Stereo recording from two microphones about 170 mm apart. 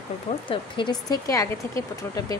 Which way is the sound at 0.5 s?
30° left (ahead or behind).